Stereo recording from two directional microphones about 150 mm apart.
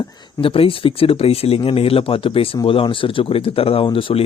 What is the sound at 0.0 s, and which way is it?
Speech, 25° left (ahead or behind).